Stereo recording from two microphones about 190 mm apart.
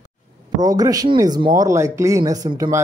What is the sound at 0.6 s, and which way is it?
Speech, 20° right (ahead or behind).